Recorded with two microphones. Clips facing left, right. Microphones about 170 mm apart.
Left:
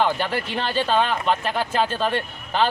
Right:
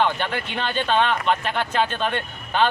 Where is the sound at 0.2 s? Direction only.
35° left (ahead or behind).